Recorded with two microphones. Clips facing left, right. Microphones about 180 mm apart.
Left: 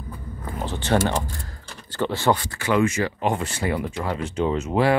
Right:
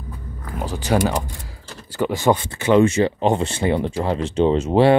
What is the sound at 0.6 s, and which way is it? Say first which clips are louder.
Speech: right 2 dB; 10° right (ahead or behind).